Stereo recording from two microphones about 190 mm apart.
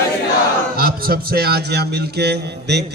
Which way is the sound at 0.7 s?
50° right (ahead or behind).